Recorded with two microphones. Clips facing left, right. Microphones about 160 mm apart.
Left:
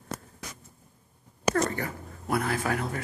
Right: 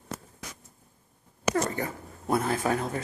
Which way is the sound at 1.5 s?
20° right (ahead or behind).